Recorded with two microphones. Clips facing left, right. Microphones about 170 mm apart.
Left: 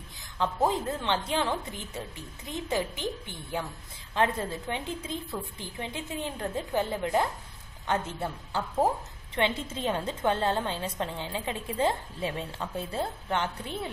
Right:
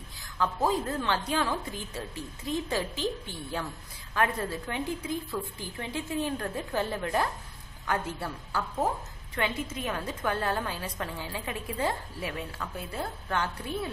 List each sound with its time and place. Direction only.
0.4 s a woman's voice: 25° left (ahead or behind)